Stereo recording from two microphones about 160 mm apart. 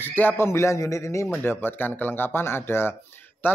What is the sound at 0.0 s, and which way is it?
Speech, 10° left (ahead or behind).